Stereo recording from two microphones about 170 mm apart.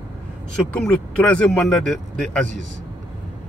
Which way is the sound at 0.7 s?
5° left (ahead or behind).